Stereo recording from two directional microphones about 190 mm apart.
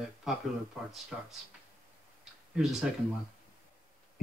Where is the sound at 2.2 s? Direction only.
5° right (ahead or behind).